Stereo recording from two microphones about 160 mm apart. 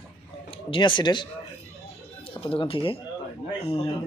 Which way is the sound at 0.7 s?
30° left (ahead or behind).